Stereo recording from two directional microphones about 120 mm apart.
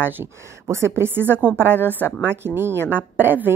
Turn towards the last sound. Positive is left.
turn(degrees=-15)  # may be behind; listen again after turning